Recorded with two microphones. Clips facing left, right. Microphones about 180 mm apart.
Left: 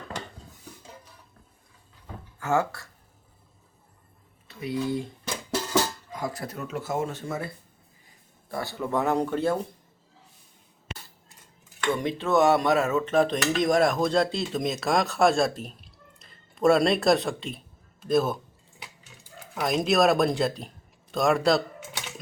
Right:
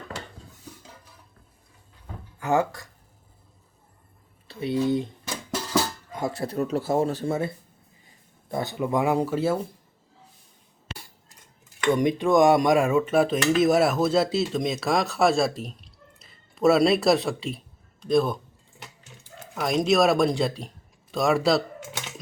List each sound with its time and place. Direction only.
2.4 s speech: 15° right (ahead or behind)
4.4 s speech: 25° right (ahead or behind)
6.1 s speech: 25° right (ahead or behind); by 9.6 s 5° right (ahead or behind)
11.9 s dishes: 15° right (ahead or behind); by 18.3 s 5° left (ahead or behind)
19.5 s speech: centre (ahead or behind)